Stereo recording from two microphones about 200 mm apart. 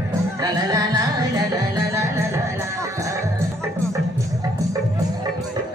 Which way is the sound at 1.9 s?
15° right (ahead or behind).